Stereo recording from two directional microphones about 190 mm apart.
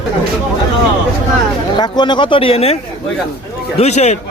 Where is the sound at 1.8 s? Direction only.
20° left (ahead or behind).